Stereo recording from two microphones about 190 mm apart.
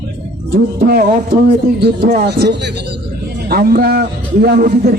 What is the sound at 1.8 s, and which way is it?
A man's voice, 60° right (ahead or behind).